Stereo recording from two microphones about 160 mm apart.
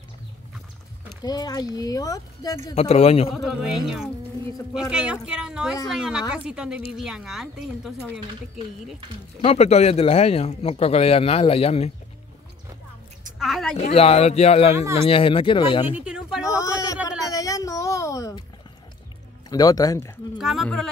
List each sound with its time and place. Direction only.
1.2 s speech: 25° left (ahead or behind)
2.7 s speech: 40° left (ahead or behind)
3.3 s a woman's voice: centre (ahead or behind)
9.4 s speech: 40° left (ahead or behind)
13.4 s a sound: centre (ahead or behind)
13.9 s speech: 40° left (ahead or behind)
15.9 s a sound: 5° right (ahead or behind)
16.4 s speech: 20° left (ahead or behind)
17.3 s a sound: 20° left (ahead or behind)
19.5 s speech: 25° left (ahead or behind)
20.3 s a woman's voice: centre (ahead or behind)